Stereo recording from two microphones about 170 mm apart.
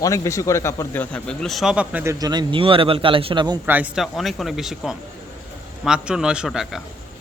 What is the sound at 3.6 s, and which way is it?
Speech, 10° right (ahead or behind).